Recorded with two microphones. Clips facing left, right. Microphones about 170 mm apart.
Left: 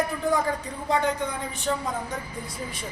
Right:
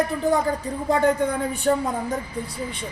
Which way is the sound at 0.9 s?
50° right (ahead or behind).